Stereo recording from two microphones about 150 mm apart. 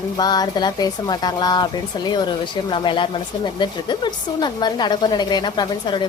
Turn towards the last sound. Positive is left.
turn(degrees=30)  # may be behind; listen again after turning